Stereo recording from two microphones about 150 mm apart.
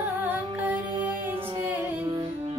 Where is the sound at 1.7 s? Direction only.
15° right (ahead or behind).